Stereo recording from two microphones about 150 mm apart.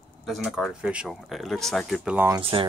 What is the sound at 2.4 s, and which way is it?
Speech, 35° right (ahead or behind).